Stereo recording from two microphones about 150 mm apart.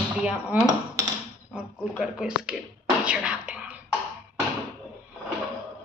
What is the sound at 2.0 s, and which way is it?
Speech, 5° right (ahead or behind).